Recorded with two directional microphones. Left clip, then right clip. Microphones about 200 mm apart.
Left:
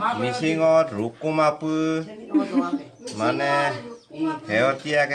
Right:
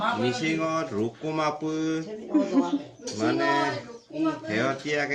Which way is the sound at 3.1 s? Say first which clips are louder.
Left 3 dB; 60° left (ahead or behind).